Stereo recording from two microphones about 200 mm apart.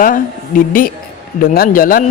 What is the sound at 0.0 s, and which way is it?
A man's voice, 45° left (ahead or behind).